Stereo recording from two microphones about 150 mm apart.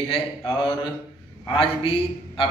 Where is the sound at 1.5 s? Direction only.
35° left (ahead or behind).